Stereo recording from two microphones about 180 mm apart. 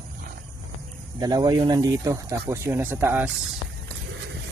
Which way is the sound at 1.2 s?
20° right (ahead or behind).